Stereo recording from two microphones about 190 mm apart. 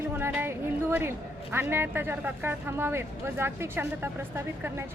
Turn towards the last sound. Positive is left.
turn(degrees=-10)  # may be behind; listen again after turning